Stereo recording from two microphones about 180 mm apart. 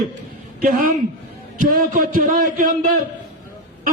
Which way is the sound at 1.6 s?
50° right (ahead or behind).